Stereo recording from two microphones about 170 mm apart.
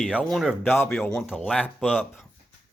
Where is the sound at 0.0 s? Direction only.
Centre (ahead or behind).